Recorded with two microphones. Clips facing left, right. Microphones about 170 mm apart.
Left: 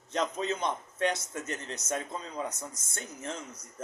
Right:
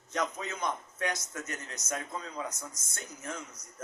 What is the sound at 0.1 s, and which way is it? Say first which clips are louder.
A man's voice: left 4 dB; 30° left (ahead or behind).